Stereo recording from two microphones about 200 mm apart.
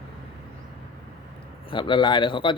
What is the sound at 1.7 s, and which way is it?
Speech, 25° left (ahead or behind).